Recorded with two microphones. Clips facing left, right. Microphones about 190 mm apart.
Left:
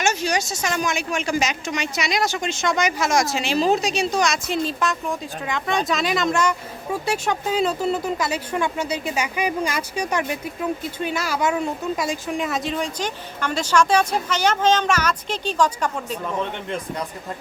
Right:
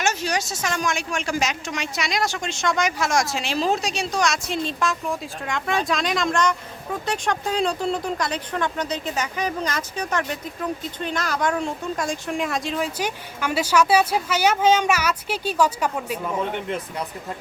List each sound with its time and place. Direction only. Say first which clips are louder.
0.0 s speech: left 2 dB; centre (ahead or behind)